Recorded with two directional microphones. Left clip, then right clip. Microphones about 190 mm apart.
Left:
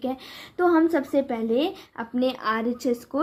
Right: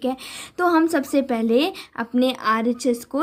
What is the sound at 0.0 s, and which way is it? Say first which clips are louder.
A woman's voice: right 5 dB; 40° right (ahead or behind).